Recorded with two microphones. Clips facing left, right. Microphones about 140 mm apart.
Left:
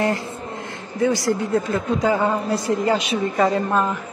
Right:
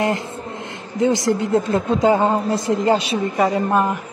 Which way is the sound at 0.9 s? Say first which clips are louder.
Right 2 dB; 20° right (ahead or behind).